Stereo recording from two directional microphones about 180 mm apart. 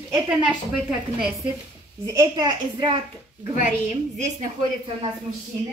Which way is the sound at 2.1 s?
25° right (ahead or behind).